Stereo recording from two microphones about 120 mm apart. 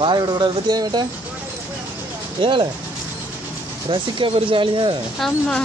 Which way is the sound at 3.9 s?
45° right (ahead or behind).